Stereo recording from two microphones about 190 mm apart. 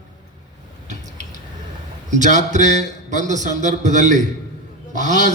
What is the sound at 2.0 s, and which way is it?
A man's voice, 40° right (ahead or behind).